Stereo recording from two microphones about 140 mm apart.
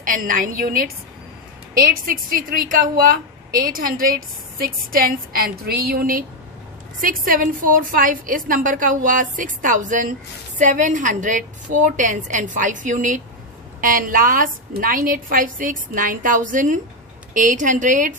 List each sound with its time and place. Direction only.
0.0 s a woman's voice: 75° right (ahead or behind)
13.7 s a woman's voice: 80° right; by 18.1 s 65° right (ahead or behind)